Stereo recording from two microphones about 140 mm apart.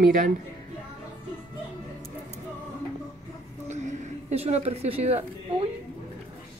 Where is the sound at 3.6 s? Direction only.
55° right (ahead or behind).